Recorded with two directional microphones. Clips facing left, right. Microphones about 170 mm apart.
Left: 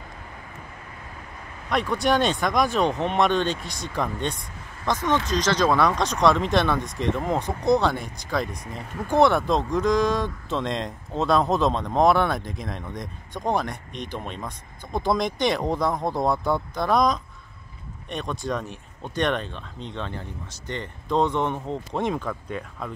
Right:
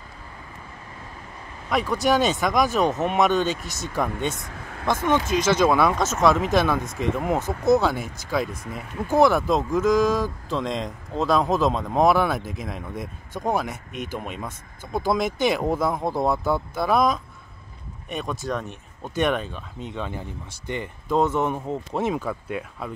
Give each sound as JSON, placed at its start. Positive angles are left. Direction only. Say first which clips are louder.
{"t": 1.7, "sound": "speech", "louder": "right 1 dB", "side_deg": 0}